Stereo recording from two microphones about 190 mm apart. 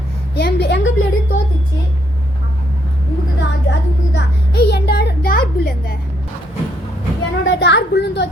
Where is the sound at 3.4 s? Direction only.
65° left (ahead or behind).